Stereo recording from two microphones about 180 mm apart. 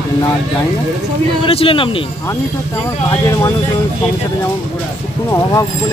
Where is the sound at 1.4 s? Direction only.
30° left (ahead or behind).